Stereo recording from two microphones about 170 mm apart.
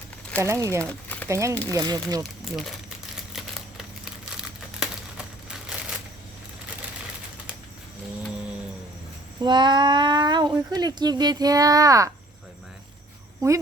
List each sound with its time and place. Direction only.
0.3 s speech: 15° right (ahead or behind)
0.9 s a sound: 10° left (ahead or behind)
1.3 s speech: 15° right (ahead or behind)
2.4 s speech: centre (ahead or behind)
3.3 s crumpling: 5° right (ahead or behind)
9.4 s speech: 25° right (ahead or behind)